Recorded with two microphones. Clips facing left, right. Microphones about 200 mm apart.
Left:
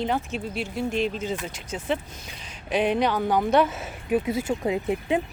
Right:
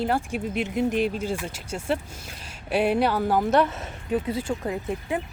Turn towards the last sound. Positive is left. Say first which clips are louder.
# left 4 dB
turn(degrees=20)  # may be behind; listen again after turning